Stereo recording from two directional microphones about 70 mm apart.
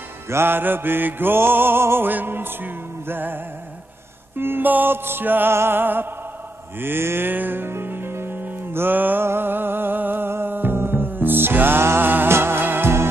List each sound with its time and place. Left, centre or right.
0.3 s music: right
4.4 s music: right